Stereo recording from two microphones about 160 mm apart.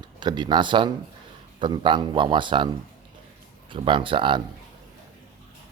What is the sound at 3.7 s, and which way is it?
Speech, 30° right (ahead or behind).